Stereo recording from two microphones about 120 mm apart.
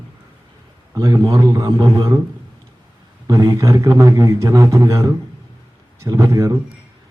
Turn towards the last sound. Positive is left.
turn(degrees=-25)  # may be behind; listen again after turning